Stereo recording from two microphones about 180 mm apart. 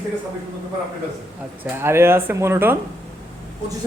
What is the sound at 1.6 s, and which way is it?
Speech, 15° right (ahead or behind).